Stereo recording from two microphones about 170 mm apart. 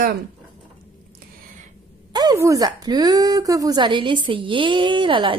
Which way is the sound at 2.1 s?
20° right (ahead or behind).